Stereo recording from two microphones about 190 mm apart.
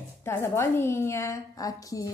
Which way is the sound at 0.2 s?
15° left (ahead or behind).